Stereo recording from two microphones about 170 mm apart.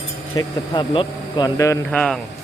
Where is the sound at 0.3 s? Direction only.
25° left (ahead or behind).